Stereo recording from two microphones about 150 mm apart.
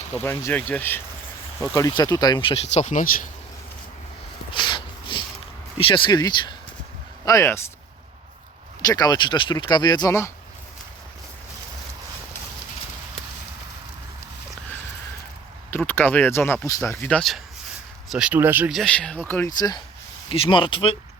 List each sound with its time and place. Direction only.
0.1 s speech: 10° left (ahead or behind); by 3.1 s 55° left (ahead or behind)
4.5 s a sound: 30° left (ahead or behind)
5.7 s speech: 35° left (ahead or behind); by 7.6 s 20° left (ahead or behind)
8.8 s speech: 25° left (ahead or behind)
15.9 s speech: 10° left (ahead or behind)
18.1 s speech: 10° right (ahead or behind)
18.7 s speech: 5° left (ahead or behind)
19.5 s speech: 25° left (ahead or behind)
20.3 s speech: 35° left (ahead or behind)